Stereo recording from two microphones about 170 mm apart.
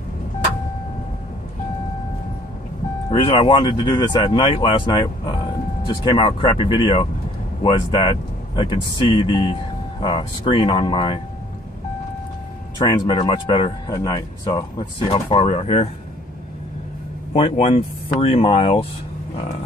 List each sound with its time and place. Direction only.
3.1 s speech: 30° left (ahead or behind)
12.7 s speech: 25° left (ahead or behind)
17.3 s speech: 40° left (ahead or behind)